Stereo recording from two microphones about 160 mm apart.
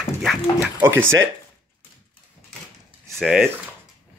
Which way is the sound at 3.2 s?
5° right (ahead or behind).